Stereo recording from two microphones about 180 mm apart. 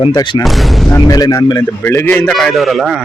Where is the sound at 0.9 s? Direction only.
20° left (ahead or behind); by 3.0 s centre (ahead or behind).